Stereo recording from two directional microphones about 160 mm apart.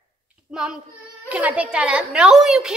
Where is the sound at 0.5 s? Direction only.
5° right (ahead or behind).